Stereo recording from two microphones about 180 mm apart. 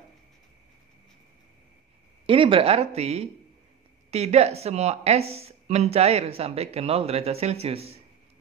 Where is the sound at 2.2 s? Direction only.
30° right (ahead or behind).